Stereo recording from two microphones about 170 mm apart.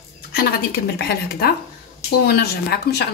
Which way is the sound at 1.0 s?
75° left (ahead or behind).